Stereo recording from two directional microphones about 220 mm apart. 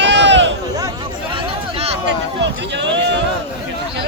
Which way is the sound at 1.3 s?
25° right (ahead or behind).